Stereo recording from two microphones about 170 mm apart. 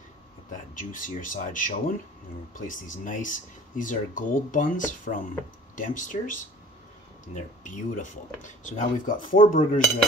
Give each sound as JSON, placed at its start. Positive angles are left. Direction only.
{"t": 0.7, "sound": "speech", "side_deg": 50}
{"t": 7.6, "sound": "speech", "side_deg": 45}